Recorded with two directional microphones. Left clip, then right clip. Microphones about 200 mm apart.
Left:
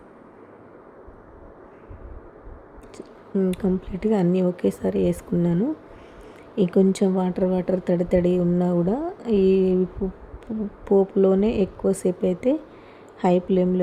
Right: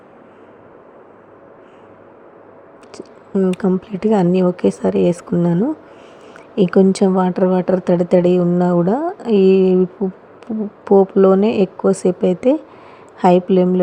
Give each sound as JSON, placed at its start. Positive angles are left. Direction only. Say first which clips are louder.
{"t": 2.9, "sound": "a woman's voice", "louder": "right 6 dB", "side_deg": -5}